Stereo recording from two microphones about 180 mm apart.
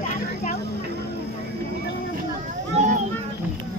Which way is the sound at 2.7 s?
35° right (ahead or behind).